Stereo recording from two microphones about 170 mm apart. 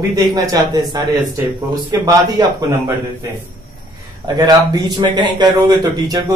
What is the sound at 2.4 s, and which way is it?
Speech, 20° right (ahead or behind).